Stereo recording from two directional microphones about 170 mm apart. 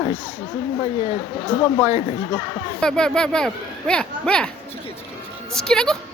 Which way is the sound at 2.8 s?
5° left (ahead or behind).